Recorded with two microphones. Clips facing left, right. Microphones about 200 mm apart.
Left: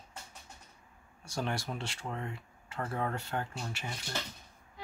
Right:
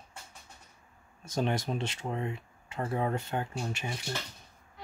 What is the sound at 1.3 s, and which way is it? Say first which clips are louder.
Speech: right 5 dB; 20° right (ahead or behind).